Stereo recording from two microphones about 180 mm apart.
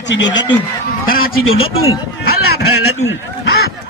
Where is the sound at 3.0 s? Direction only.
80° left.